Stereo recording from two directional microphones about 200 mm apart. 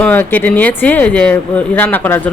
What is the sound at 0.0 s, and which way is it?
Speech, 10° left (ahead or behind).